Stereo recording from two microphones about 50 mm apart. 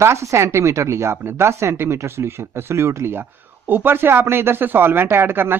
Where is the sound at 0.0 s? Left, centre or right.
Right.